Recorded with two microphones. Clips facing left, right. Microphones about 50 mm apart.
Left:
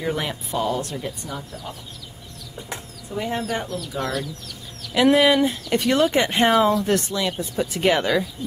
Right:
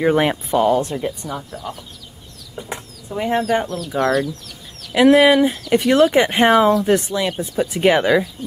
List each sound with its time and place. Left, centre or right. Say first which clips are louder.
0.0 s speech: right 9 dB; right
2.7 s speech: right 2 dB; right
4.9 s speech: right 5 dB; centre